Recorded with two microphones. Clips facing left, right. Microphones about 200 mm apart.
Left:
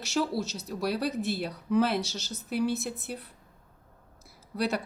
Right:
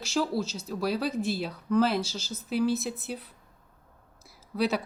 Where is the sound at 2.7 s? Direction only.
60° left (ahead or behind).